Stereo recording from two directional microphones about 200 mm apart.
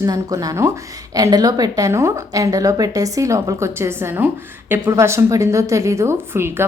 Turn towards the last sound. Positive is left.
turn(degrees=-10)  # may be behind; listen again after turning